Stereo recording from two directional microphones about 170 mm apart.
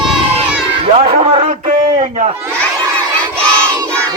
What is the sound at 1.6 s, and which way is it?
Speech, 45° right (ahead or behind).